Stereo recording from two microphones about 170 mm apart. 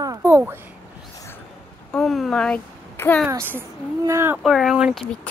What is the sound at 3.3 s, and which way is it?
Speech, 15° right (ahead or behind).